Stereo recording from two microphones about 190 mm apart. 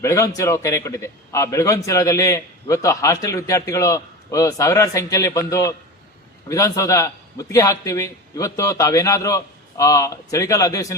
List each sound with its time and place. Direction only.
0.0 s a man's voice: 15° left (ahead or behind)